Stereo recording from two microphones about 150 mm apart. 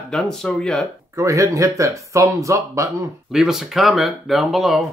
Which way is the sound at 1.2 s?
20° right (ahead or behind).